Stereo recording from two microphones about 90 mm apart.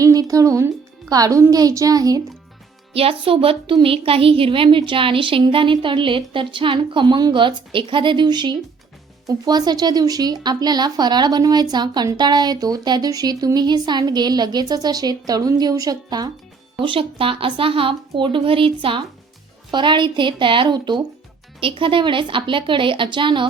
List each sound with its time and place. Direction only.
0.0 s a woman's voice: 40° right (ahead or behind)
2.9 s a woman's voice: 90° right; by 8.5 s 55° right (ahead or behind)
9.2 s speech: 45° right (ahead or behind)
16.8 s a woman's voice: 80° right
19.7 s speech: 60° right (ahead or behind)
21.6 s a woman's voice: 75° right (ahead or behind)